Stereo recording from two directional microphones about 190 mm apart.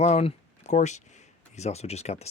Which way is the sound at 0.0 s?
35° left (ahead or behind).